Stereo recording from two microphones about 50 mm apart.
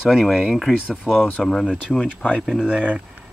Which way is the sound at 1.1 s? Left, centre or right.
Left.